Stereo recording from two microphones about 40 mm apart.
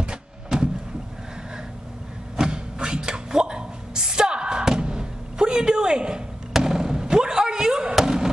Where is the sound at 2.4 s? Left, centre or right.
Right.